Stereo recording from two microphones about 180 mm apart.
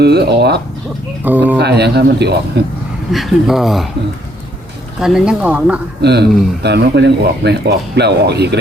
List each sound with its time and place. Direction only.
0.0 s speech: 65° right (ahead or behind)
1.2 s speech: 10° right (ahead or behind)
1.5 s speech: 65° right (ahead or behind)
3.1 s speech: centre (ahead or behind)
4.9 s speech: 5° right (ahead or behind)
6.0 s speech: 70° right (ahead or behind)